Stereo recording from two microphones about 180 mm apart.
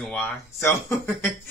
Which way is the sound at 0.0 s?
10° left (ahead or behind).